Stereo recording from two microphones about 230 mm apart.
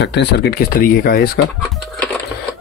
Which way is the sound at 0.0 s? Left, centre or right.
Left.